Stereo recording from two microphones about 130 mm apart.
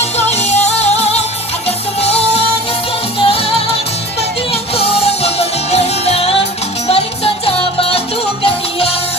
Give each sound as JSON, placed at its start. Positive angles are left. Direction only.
{"t": 0.0, "sound": "music", "side_deg": 55}
{"t": 4.7, "sound": "music", "side_deg": 50}